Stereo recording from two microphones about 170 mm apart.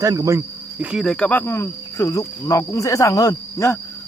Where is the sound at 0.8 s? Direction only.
Centre (ahead or behind); by 3.8 s 20° left (ahead or behind).